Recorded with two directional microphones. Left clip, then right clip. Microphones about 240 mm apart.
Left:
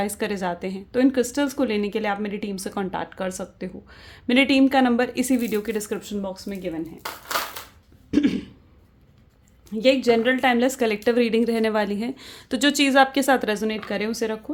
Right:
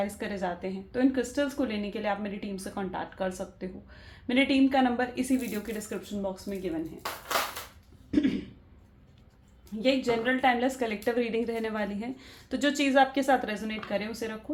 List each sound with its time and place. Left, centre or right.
0.0 s a woman's voice: left
8.1 s throat clearing: left
9.8 s a woman's voice: left